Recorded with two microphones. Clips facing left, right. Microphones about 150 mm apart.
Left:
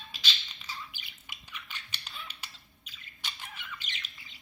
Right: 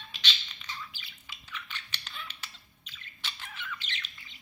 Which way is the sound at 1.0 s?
15° left (ahead or behind).